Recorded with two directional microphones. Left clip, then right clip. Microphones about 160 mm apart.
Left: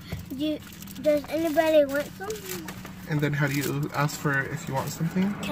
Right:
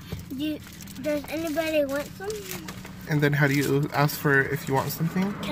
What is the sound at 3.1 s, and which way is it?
Speech, 55° right (ahead or behind).